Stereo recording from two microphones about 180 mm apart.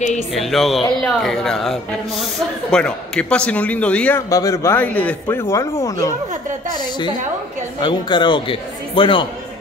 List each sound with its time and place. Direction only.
0.3 s speech: centre (ahead or behind)
4.3 s speech: 20° left (ahead or behind)
7.8 s speech: 25° left (ahead or behind)